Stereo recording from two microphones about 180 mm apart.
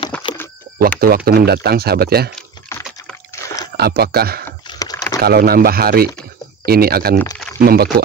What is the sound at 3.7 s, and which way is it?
Speech, 60° right (ahead or behind).